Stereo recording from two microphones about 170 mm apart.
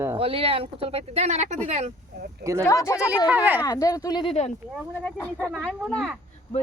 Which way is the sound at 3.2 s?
10° right (ahead or behind).